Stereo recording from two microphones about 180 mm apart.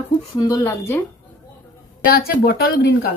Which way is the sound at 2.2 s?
60° left (ahead or behind).